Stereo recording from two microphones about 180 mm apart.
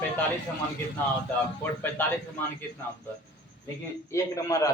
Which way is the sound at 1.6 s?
10° left (ahead or behind).